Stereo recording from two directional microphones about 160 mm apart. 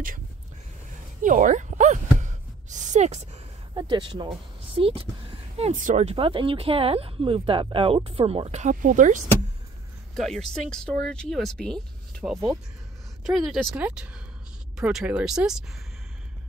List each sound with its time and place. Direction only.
1.2 s a sound: 55° right (ahead or behind)
3.7 s speech: 30° right (ahead or behind)
5.6 s speech: 55° right (ahead or behind)
10.1 s speech: centre (ahead or behind)